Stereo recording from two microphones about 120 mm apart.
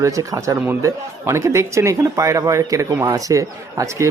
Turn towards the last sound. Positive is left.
turn(degrees=-25)  # may be behind; listen again after turning